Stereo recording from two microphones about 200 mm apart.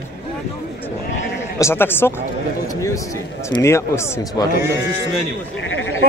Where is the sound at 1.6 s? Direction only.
10° left (ahead or behind).